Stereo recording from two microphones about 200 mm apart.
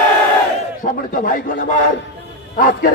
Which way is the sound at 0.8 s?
40° left (ahead or behind).